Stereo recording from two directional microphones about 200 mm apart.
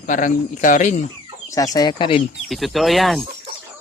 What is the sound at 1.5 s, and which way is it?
Speech, 20° left (ahead or behind).